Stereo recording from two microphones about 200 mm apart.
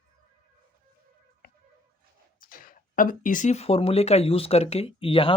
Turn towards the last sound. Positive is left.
turn(degrees=25)  # may be behind; listen again after turning